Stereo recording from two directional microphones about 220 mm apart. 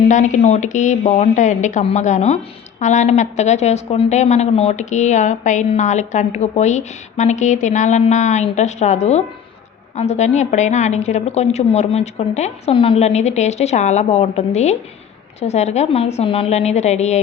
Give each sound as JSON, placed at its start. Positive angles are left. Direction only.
{"t": 0.0, "sound": "a woman's voice", "side_deg": 35}